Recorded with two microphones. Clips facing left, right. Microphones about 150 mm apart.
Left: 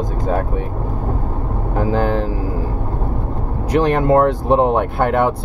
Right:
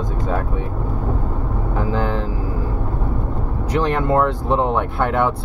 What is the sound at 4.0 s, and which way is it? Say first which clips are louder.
Speech: left 4 dB; 40° left (ahead or behind).